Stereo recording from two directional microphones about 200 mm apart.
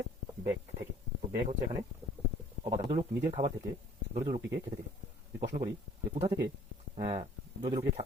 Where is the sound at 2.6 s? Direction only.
25° right (ahead or behind).